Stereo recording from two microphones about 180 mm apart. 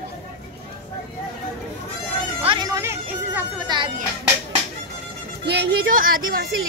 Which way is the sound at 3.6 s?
25° right (ahead or behind).